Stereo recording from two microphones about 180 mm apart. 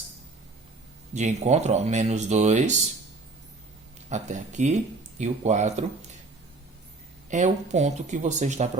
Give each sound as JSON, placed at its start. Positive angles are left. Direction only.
{"t": 1.1, "sound": "speech", "side_deg": -40}
{"t": 4.1, "sound": "speech", "side_deg": -40}
{"t": 7.3, "sound": "speech", "side_deg": -40}